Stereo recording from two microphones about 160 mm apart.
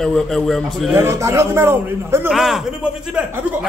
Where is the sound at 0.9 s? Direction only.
15° right (ahead or behind).